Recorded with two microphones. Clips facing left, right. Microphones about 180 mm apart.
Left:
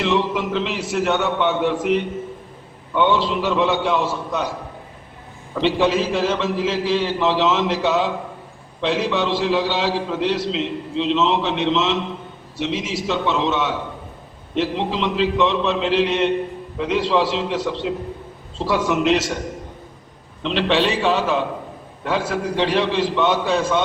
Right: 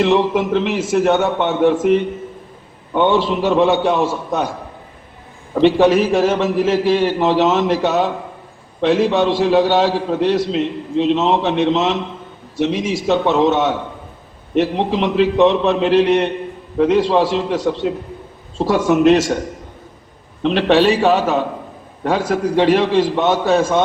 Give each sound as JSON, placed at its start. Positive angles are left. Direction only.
{"t": 0.0, "sound": "a man's voice", "side_deg": -50}
{"t": 5.5, "sound": "a man's voice", "side_deg": -50}
{"t": 20.4, "sound": "a man's voice", "side_deg": -45}